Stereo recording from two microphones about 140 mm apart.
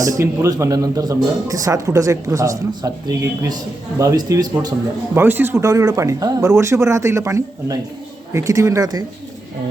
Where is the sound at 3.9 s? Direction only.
25° right (ahead or behind).